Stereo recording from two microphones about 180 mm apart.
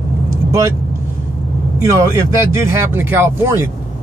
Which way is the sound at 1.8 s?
15° right (ahead or behind).